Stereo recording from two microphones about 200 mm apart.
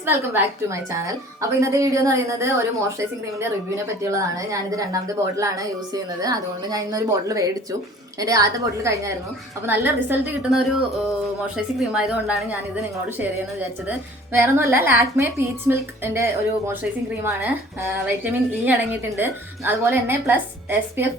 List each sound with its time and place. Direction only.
0.0 s a woman's voice: 10° right (ahead or behind)
4.1 s a woman's voice: 15° right (ahead or behind)
18.2 s a woman's voice: 10° right (ahead or behind)